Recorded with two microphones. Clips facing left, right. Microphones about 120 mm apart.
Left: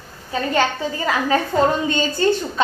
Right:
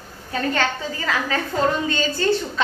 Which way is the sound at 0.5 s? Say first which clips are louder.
Left 4 dB; 20° left (ahead or behind).